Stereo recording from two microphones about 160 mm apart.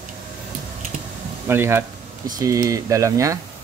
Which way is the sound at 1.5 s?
15° right (ahead or behind).